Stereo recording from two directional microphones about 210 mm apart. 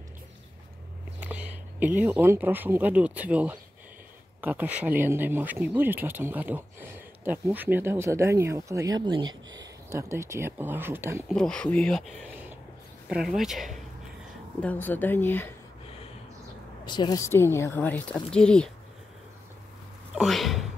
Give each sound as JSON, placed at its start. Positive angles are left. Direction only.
{"t": 1.2, "sound": "speech", "side_deg": -5}
{"t": 11.2, "sound": "speech", "side_deg": 0}
{"t": 13.1, "sound": "speech", "side_deg": 0}
{"t": 16.8, "sound": "speech", "side_deg": 20}
{"t": 20.2, "sound": "speech", "side_deg": 0}